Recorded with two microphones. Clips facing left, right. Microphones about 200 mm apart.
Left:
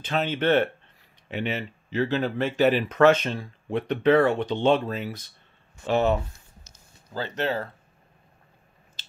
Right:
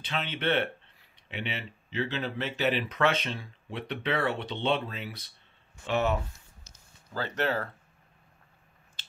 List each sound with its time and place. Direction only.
0.0 s speech: 45° left (ahead or behind)
5.9 s speech: 30° left (ahead or behind)
7.2 s speech: 20° left (ahead or behind)